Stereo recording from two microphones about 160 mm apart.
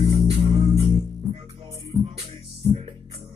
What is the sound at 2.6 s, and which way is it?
Music, 40° right (ahead or behind).